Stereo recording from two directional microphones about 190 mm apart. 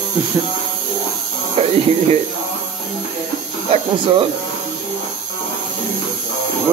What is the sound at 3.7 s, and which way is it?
Speech, 30° right (ahead or behind).